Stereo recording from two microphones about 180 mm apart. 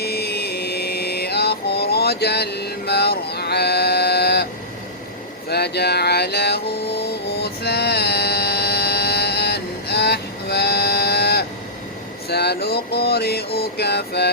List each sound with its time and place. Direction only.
0.0 s mantra: 60° left (ahead or behind)
5.5 s mantra: 65° left (ahead or behind)
12.3 s vehicle: 65° left (ahead or behind)
12.6 s music: 65° left (ahead or behind)